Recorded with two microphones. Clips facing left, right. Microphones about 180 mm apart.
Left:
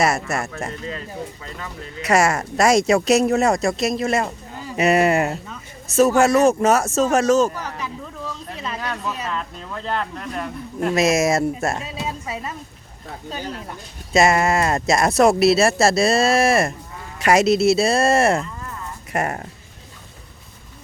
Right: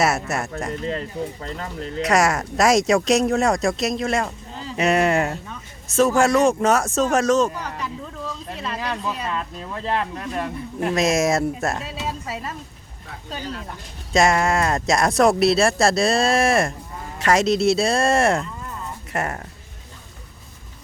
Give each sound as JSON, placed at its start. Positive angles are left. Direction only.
{"t": 0.0, "sound": "speech", "side_deg": 0}
{"t": 0.9, "sound": "speech", "side_deg": -35}
{"t": 2.0, "sound": "speech", "side_deg": 0}
{"t": 8.5, "sound": "a sound", "side_deg": 0}
{"t": 9.8, "sound": "speech", "side_deg": -10}
{"t": 14.1, "sound": "speech", "side_deg": 5}
{"t": 19.1, "sound": "speech", "side_deg": 15}